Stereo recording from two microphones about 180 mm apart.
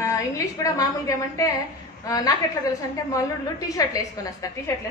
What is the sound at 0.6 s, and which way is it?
A woman's voice, 20° left (ahead or behind).